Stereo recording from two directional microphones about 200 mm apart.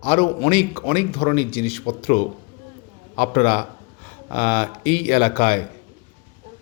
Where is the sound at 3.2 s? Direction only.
35° left (ahead or behind).